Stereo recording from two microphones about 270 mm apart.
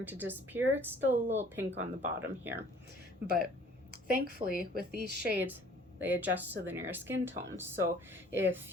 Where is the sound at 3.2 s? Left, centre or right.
Right.